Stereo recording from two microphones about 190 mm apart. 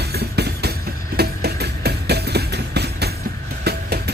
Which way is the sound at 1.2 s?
55° right (ahead or behind).